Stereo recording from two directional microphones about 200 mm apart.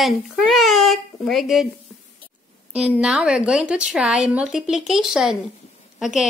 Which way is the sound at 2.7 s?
5° right (ahead or behind).